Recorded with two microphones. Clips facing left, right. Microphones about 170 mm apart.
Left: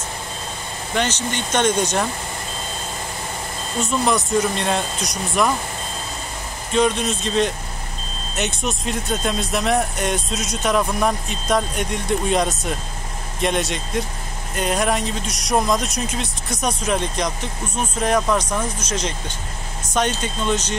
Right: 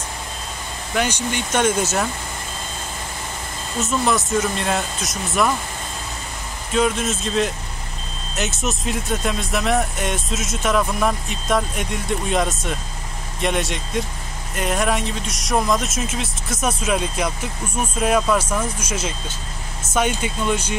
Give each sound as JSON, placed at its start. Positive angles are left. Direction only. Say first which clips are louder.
{"t": 0.9, "sound": "speech", "louder": "right 1 dB", "side_deg": -10}
{"t": 3.8, "sound": "speech", "louder": "even", "side_deg": 0}
{"t": 6.7, "sound": "speech", "louder": "left 1 dB", "side_deg": -5}